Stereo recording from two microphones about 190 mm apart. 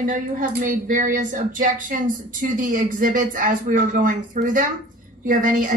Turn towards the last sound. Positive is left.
turn(degrees=-45)  # may be behind; listen again after turning